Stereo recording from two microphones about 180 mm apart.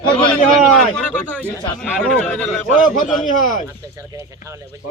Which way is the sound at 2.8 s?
50° left (ahead or behind).